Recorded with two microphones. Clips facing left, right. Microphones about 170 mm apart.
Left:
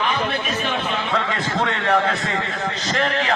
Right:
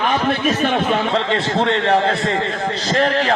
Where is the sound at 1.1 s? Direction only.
30° right (ahead or behind).